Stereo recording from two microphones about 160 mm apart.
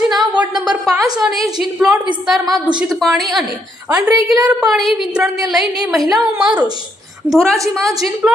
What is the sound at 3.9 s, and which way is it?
Speech, 25° right (ahead or behind).